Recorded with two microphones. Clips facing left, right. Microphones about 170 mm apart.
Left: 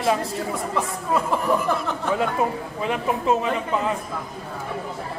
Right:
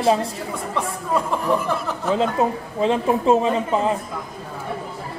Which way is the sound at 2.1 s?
25° right (ahead or behind).